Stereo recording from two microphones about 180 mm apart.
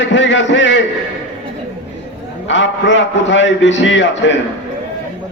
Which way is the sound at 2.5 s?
90° left.